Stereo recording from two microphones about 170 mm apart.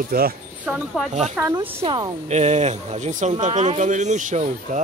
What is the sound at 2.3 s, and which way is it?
Speech, 40° right (ahead or behind).